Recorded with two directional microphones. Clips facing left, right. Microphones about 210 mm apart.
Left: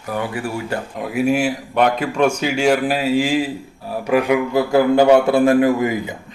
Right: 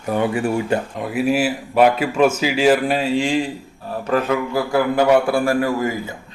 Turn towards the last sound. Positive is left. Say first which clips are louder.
# left 4 dB
turn(degrees=15)  # may be behind; listen again after turning